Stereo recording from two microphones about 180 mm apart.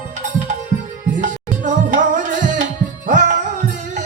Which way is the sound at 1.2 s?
45° right (ahead or behind).